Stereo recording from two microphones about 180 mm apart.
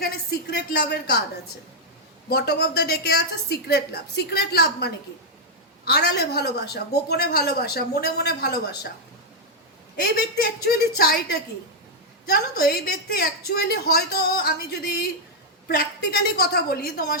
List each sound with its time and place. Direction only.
0.0 s a sound: 60° left (ahead or behind)
2.3 s a woman's voice: 65° left (ahead or behind)
10.0 s a woman's voice: 65° left (ahead or behind)